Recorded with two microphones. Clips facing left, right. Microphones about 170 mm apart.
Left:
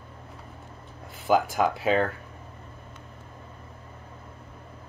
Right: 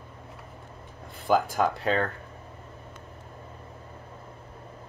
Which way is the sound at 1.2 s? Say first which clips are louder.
Left 1 dB; centre (ahead or behind).